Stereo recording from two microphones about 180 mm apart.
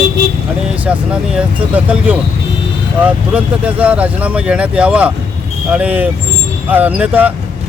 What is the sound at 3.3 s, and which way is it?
Speech, 5° right (ahead or behind).